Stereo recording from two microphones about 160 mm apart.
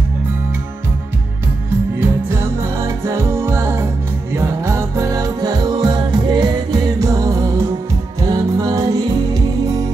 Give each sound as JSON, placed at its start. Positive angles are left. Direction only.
{"t": 2.8, "sound": "music", "side_deg": -15}